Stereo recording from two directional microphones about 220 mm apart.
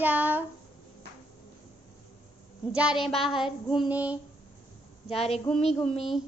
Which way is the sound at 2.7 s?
5° right (ahead or behind).